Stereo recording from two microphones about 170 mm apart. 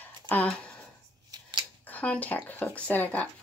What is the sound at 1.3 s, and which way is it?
Scissors, 25° right (ahead or behind).